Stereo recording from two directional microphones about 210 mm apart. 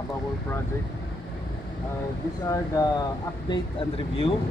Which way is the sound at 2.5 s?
15° left (ahead or behind).